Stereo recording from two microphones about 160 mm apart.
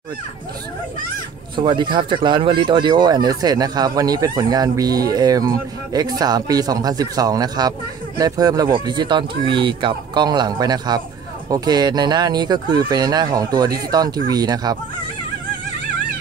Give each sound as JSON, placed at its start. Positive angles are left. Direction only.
{"t": 1.6, "sound": "speech", "side_deg": -30}